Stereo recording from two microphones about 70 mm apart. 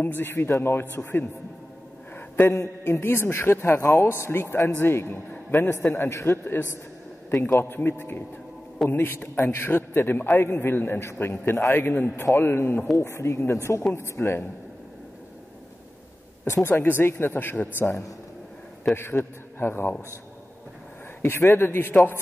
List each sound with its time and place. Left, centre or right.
0.0 s a man's voice: left
5.3 s a sound: left
5.9 s a man's voice: left
16.6 s a man's voice: left
18.9 s a man's voice: left
21.2 s a man's voice: left